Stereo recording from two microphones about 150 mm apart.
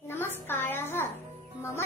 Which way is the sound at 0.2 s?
15° left (ahead or behind).